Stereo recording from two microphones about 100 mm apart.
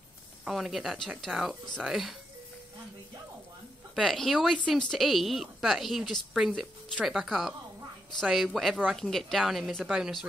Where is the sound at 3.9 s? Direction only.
Centre (ahead or behind).